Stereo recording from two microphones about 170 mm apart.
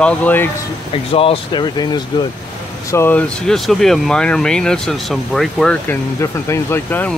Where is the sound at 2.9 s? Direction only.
15° left (ahead or behind).